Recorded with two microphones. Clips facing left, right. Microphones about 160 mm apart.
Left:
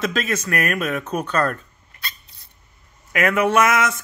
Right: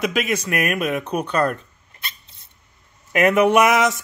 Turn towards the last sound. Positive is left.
turn(degrees=-15)  # may be behind; listen again after turning